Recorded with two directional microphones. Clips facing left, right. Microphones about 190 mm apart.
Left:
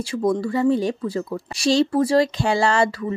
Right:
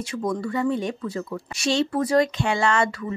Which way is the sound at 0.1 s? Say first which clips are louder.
Left 5 dB; 30° left (ahead or behind).